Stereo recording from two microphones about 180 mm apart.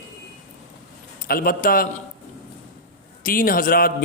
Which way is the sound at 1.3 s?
55° left (ahead or behind).